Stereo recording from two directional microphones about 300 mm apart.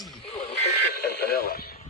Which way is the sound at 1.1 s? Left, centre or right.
Left.